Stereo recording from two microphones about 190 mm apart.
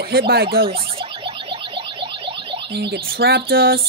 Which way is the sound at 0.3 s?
55° right (ahead or behind).